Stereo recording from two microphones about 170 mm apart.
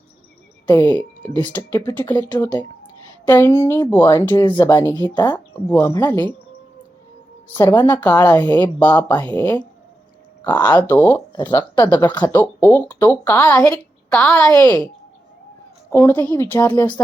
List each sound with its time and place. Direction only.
0.7 s a woman's voice: 10° left (ahead or behind)
7.4 s a woman's voice: 15° left (ahead or behind)
8.2 s a woman's voice: 10° left (ahead or behind)
14.5 s a woman's voice: 20° left (ahead or behind)
15.9 s a woman's voice: 15° left (ahead or behind)